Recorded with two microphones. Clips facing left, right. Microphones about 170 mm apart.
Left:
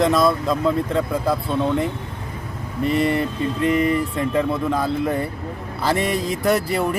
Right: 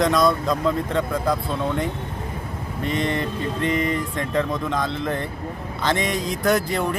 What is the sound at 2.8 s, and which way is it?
Speech, 5° left (ahead or behind).